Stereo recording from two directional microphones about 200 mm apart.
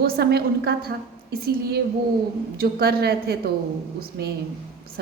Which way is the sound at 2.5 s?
50° right (ahead or behind).